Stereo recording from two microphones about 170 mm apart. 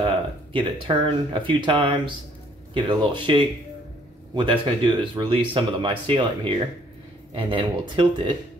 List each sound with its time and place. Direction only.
0.0 s speech: 30° right (ahead or behind)